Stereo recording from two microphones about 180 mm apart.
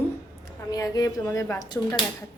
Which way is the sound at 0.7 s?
20° left (ahead or behind).